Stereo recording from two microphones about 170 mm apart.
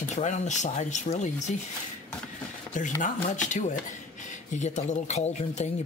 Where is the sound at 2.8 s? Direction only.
50° left (ahead or behind).